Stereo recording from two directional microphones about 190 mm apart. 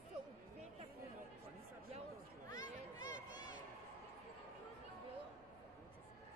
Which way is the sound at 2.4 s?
20° left (ahead or behind).